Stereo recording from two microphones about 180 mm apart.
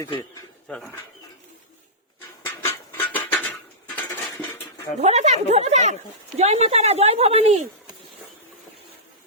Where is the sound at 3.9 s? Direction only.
10° left (ahead or behind).